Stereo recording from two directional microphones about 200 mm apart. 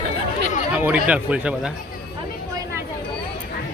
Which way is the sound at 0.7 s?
10° right (ahead or behind).